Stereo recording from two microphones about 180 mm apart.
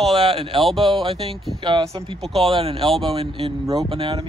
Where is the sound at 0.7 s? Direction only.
Centre (ahead or behind).